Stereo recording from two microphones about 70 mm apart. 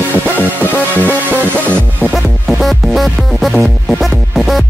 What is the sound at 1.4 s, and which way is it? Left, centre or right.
Music, left.